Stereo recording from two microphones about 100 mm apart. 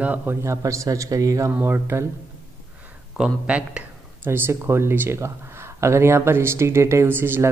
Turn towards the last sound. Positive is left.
turn(degrees=-20)  # may be behind; listen again after turning